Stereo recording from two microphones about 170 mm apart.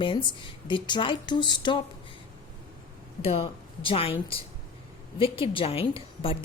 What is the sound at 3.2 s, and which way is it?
A woman's voice, 35° left (ahead or behind).